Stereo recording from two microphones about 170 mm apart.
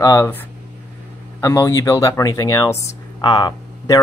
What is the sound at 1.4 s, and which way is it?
Speech, 20° left (ahead or behind).